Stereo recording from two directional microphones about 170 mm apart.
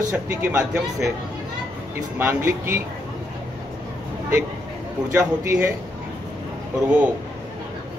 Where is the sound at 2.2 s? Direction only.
15° right (ahead or behind).